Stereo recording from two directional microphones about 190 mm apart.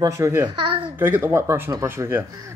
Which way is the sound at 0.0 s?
15° right (ahead or behind).